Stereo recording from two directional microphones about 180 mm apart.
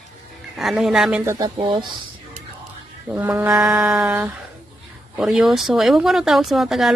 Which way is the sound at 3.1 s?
10° right (ahead or behind).